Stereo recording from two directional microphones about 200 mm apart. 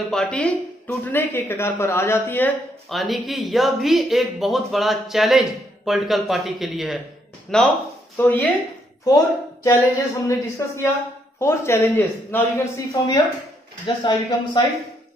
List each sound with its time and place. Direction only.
0.1 s a man's voice: 5° left (ahead or behind)
11.3 s a man's voice: 10° left (ahead or behind)